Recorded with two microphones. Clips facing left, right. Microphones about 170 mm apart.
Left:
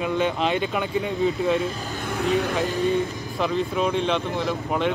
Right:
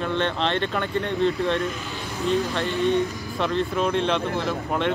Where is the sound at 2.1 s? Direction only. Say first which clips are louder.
Left 1 dB; 65° left (ahead or behind).